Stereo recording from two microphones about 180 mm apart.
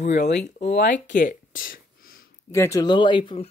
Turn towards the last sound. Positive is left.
turn(degrees=25)  # may be behind; listen again after turning